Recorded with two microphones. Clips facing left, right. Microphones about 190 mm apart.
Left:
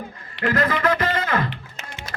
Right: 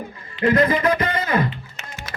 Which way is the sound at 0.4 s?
20° right (ahead or behind).